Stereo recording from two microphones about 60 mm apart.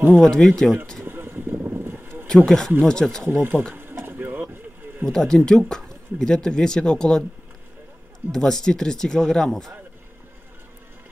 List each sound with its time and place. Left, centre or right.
0.2 s speech: centre
1.0 s a sound: right
2.2 s speech: centre
3.3 s speech: right
3.7 s a sound: right
5.1 s speech: centre
8.3 s speech: centre